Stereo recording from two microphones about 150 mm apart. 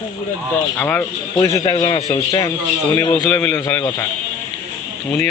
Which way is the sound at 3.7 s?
20° left (ahead or behind).